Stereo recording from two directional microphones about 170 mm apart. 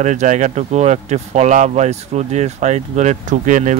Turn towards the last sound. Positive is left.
turn(degrees=-50)  # may be behind; listen again after turning